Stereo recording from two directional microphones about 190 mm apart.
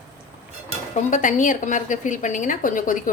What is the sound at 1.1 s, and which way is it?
A woman's voice, 40° left (ahead or behind).